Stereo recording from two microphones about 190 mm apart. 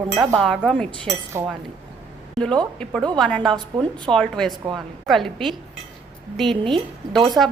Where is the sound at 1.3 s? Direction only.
15° right (ahead or behind).